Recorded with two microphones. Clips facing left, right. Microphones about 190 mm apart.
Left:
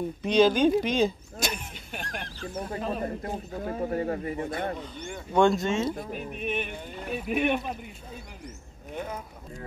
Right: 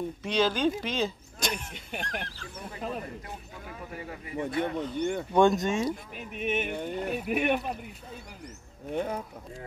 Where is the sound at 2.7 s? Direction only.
45° left (ahead or behind).